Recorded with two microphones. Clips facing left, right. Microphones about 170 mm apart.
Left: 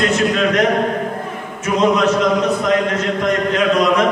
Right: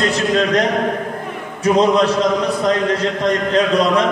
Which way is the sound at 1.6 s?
35° right (ahead or behind).